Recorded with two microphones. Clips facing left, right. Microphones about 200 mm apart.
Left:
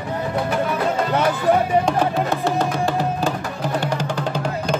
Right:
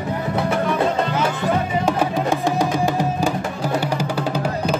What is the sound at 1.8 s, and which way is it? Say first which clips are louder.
Music: even; 10° right (ahead or behind).